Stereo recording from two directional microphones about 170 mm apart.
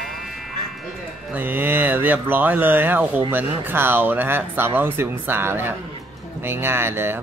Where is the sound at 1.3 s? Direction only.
10° right (ahead or behind).